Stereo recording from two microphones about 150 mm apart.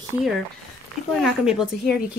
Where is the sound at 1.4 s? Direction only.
5° right (ahead or behind).